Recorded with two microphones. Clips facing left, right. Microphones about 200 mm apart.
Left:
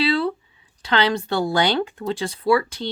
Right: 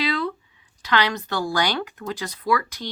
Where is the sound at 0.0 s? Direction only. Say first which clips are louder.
Left 4 dB; 30° left (ahead or behind).